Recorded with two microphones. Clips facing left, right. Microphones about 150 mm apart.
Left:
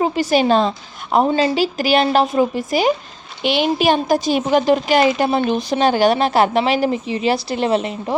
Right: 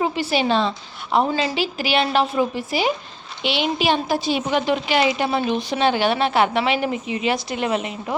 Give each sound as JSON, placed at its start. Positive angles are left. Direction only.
{"t": 0.0, "sound": "a woman's voice", "side_deg": 45}